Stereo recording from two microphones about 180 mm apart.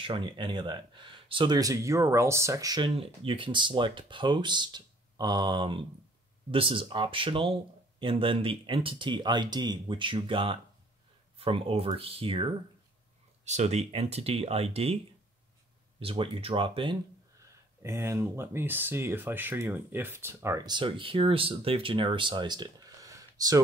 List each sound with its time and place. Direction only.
0.0 s speech: 30° right (ahead or behind)
13.5 s speech: 40° right (ahead or behind)
16.0 s speech: 30° right (ahead or behind)
17.8 s speech: 15° right (ahead or behind)